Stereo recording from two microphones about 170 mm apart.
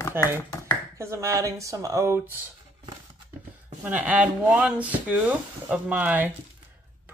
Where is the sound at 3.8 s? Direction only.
5° right (ahead or behind).